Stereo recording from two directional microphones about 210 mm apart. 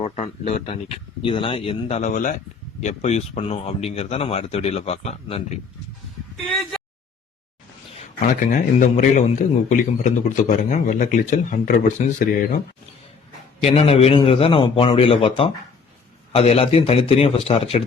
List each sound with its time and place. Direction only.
0.0 s speech: 30° left (ahead or behind)
6.4 s speech: centre (ahead or behind)
8.2 s a man's voice: 35° left (ahead or behind)
13.7 s speech: 30° left (ahead or behind)